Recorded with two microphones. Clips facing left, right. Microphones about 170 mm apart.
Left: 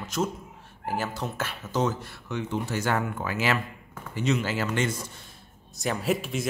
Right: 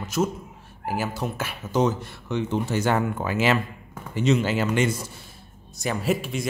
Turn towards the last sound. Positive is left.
turn(degrees=0)  # may be behind; listen again after turning